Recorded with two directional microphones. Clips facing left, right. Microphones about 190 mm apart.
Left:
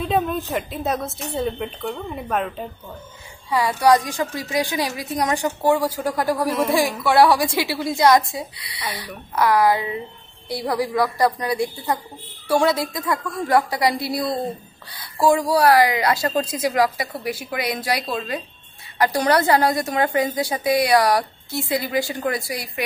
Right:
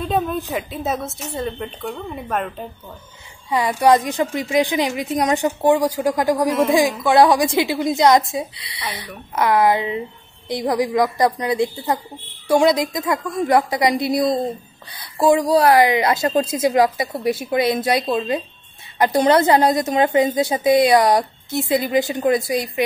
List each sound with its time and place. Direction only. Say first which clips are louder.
0.0 s a sound: even; centre (ahead or behind)
0.5 s a woman's voice: even; centre (ahead or behind)
3.4 s a woman's voice: right 1 dB; 20° right (ahead or behind)